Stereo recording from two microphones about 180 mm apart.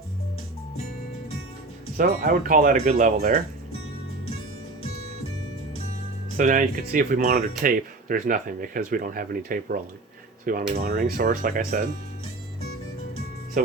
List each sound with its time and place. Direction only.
2.0 s speech: 50° right (ahead or behind)
6.3 s speech: 45° right (ahead or behind)
10.8 s speech: 40° right (ahead or behind)